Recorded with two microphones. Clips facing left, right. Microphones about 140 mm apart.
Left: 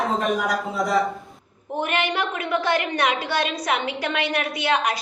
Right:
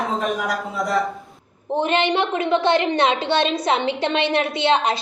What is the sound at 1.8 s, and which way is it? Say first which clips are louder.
A woman's voice: right 4 dB; 25° right (ahead or behind).